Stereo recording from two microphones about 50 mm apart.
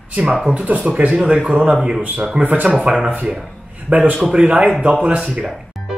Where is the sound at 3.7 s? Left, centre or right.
Right.